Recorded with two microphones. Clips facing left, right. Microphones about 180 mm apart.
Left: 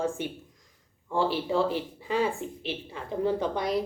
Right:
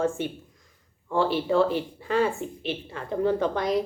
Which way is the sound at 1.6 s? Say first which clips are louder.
Right 4 dB; 60° right (ahead or behind).